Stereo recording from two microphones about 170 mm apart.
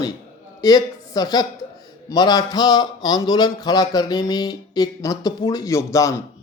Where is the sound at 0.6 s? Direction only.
25° left (ahead or behind).